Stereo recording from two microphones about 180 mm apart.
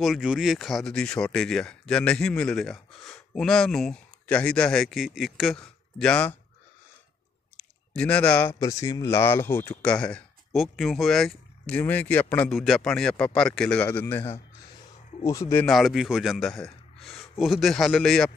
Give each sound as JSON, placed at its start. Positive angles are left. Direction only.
{"t": 0.0, "sound": "speech", "side_deg": -5}
{"t": 7.5, "sound": "speech", "side_deg": 5}
{"t": 15.2, "sound": "speech", "side_deg": 15}
{"t": 15.6, "sound": "a man's voice", "side_deg": 0}